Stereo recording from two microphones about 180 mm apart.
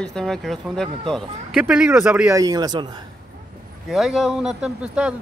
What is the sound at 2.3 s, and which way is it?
Speech, 20° right (ahead or behind).